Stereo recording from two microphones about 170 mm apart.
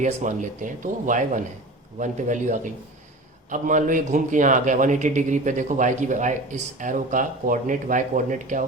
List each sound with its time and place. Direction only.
0.0 s a man's voice: 45° right (ahead or behind)